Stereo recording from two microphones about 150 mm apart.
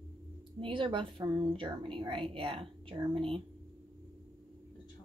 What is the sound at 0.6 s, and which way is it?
A woman's voice, 35° right (ahead or behind).